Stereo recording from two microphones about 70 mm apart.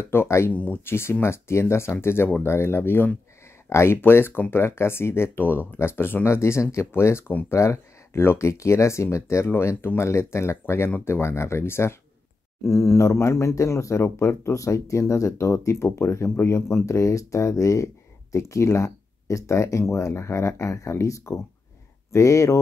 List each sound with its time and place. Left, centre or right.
0.0 s speech: left
0.5 s speech: left
0.8 s speech: left